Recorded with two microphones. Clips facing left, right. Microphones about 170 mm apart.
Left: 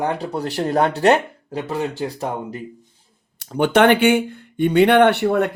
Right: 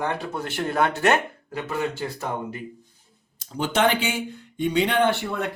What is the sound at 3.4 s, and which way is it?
Speech, 65° left (ahead or behind).